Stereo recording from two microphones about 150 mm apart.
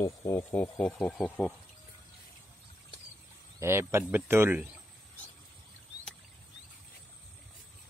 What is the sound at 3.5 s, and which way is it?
Speech, 15° right (ahead or behind).